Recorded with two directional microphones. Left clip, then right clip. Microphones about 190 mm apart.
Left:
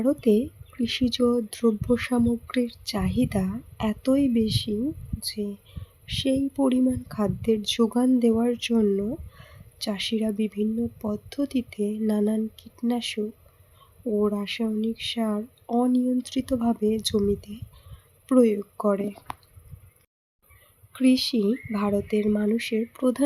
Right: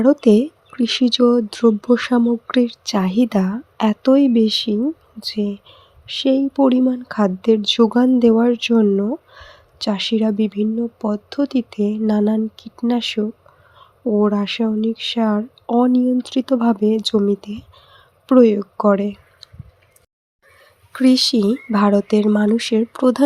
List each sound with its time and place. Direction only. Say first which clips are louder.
0.0 s speech: right 9 dB; 25° right (ahead or behind)
20.9 s speech: right 8 dB; 20° right (ahead or behind)